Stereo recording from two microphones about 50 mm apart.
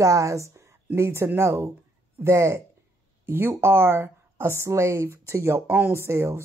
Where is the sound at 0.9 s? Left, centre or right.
Right.